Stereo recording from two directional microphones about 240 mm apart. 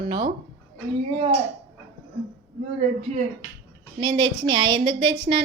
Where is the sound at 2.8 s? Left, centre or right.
Right.